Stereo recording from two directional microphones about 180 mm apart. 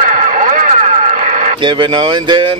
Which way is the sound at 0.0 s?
45° right (ahead or behind).